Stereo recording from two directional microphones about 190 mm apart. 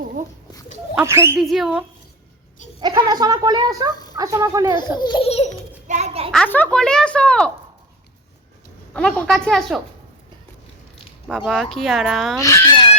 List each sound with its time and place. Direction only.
0.9 s speech: 15° right (ahead or behind)
1.4 s speech: centre (ahead or behind)
2.8 s speech: 20° right (ahead or behind)
4.9 s baby laughter: 25° left (ahead or behind)
5.9 s a sound: 35° right (ahead or behind)
6.3 s speech: 5° left (ahead or behind)
8.9 s speech: 5° left (ahead or behind)
11.3 s speech: centre (ahead or behind)
12.4 s a sound: 15° left (ahead or behind)